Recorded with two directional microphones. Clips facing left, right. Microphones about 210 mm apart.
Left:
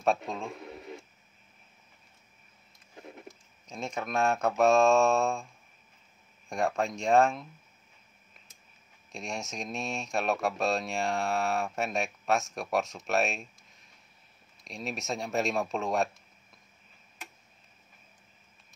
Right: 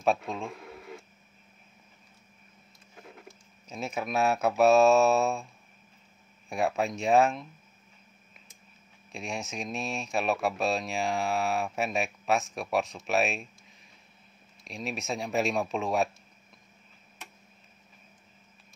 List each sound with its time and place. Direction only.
0.0 s speech: centre (ahead or behind)
0.7 s radio: 25° left (ahead or behind)
3.6 s speech: 5° right (ahead or behind)
6.5 s speech: 5° right (ahead or behind)
9.1 s speech: centre (ahead or behind)
14.6 s speech: centre (ahead or behind)